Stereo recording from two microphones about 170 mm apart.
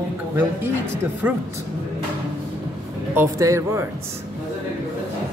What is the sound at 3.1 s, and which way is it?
Speech, 15° right (ahead or behind).